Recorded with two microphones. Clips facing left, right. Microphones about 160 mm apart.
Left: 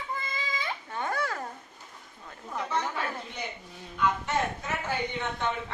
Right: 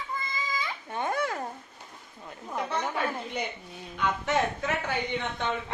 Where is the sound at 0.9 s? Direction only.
20° right (ahead or behind).